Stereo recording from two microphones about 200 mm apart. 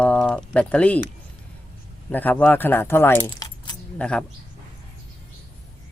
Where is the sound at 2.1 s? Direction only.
10° left (ahead or behind).